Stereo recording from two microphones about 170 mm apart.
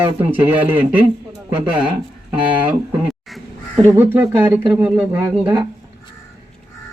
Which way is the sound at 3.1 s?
Centre (ahead or behind).